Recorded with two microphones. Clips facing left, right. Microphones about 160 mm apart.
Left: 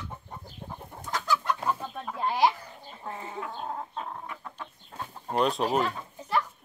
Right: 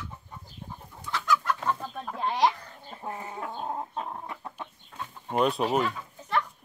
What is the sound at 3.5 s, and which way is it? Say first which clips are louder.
Chicken: right 2 dB; 15° right (ahead or behind).